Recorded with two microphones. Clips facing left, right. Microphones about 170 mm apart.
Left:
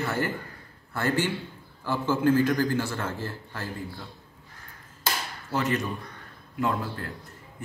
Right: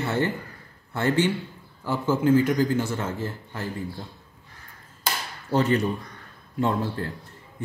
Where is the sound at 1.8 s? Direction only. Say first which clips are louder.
Right 2 dB; 15° right (ahead or behind).